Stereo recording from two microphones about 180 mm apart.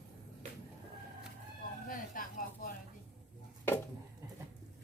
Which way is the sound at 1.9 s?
50° left (ahead or behind).